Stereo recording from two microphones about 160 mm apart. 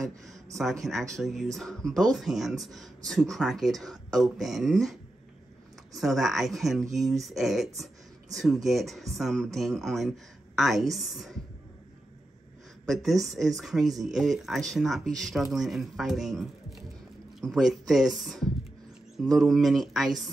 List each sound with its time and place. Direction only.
0.6 s speech: centre (ahead or behind)
5.9 s speech: centre (ahead or behind)
12.8 s speech: centre (ahead or behind)